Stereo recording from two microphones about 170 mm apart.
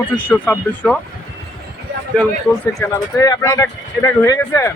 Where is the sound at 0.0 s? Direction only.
10° left (ahead or behind).